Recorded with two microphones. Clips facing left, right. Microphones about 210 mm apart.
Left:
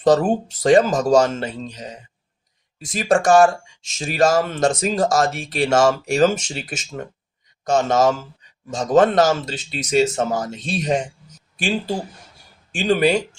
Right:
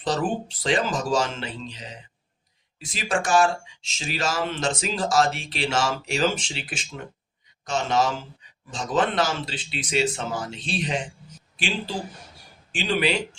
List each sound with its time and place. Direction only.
0.0 s speech: 45° left (ahead or behind)
12.7 s speech: 45° left (ahead or behind)